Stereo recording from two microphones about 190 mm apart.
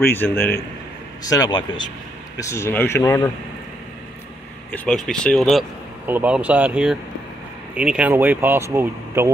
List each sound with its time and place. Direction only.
0.0 s speech: 10° left (ahead or behind)
4.6 s speech: 5° left (ahead or behind); by 9.3 s 15° right (ahead or behind)